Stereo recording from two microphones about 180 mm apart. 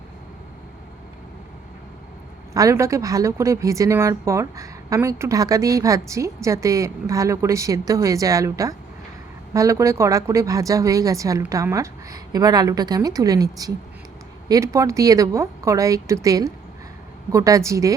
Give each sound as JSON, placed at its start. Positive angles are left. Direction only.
{"t": 2.5, "sound": "a woman's voice", "side_deg": -15}